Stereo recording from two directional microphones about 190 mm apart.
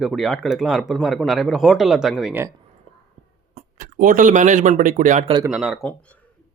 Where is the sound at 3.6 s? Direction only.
45° right (ahead or behind).